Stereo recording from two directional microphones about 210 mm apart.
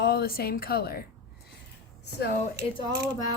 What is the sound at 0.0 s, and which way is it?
A woman's voice, 50° left (ahead or behind).